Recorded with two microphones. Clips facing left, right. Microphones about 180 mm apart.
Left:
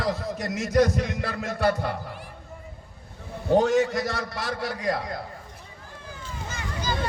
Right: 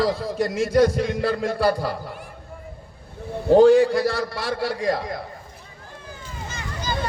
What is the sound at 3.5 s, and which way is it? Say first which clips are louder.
A man's voice: right 7 dB; 30° right (ahead or behind).